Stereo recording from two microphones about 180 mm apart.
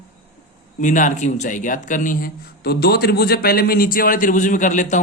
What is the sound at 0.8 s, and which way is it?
Speech, 45° left (ahead or behind).